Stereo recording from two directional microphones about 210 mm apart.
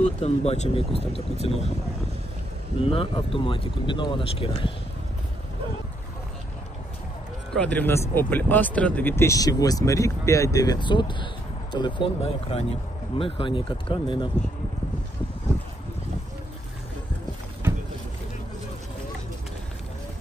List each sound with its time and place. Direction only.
0.0 s speech: 30° left (ahead or behind)
2.8 s speech: 25° left (ahead or behind)
7.5 s speech: 5° left (ahead or behind); by 14.3 s 25° left (ahead or behind)